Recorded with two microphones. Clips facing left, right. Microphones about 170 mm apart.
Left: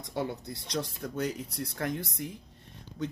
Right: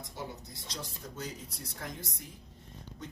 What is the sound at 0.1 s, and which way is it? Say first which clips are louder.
Speech: left 12 dB; 65° left (ahead or behind).